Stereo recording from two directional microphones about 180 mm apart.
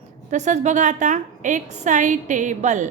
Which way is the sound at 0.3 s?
40° right (ahead or behind).